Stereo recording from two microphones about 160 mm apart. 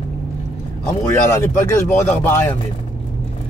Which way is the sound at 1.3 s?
15° left (ahead or behind).